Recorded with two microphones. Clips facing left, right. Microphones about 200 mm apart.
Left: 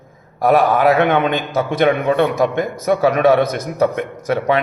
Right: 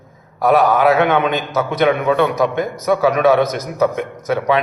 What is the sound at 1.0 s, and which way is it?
Speech, 50° left (ahead or behind).